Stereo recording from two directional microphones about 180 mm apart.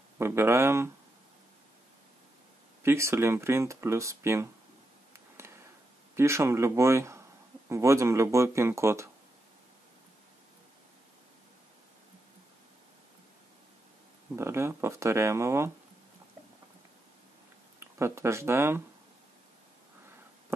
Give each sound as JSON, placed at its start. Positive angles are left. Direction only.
{"t": 0.2, "sound": "speech", "side_deg": -15}
{"t": 2.8, "sound": "speech", "side_deg": -15}
{"t": 6.1, "sound": "a man's voice", "side_deg": -15}
{"t": 14.3, "sound": "speech", "side_deg": -15}
{"t": 17.7, "sound": "speech", "side_deg": -15}